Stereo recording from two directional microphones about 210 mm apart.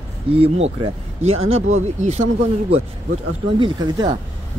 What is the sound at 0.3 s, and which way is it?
Speech, 30° right (ahead or behind).